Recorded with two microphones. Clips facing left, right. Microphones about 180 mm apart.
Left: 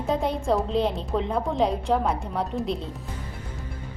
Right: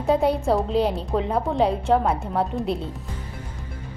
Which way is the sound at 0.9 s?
5° right (ahead or behind).